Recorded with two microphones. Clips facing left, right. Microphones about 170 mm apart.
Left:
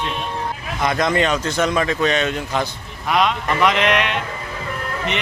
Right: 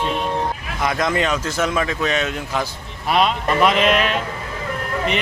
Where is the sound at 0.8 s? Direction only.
5° right (ahead or behind).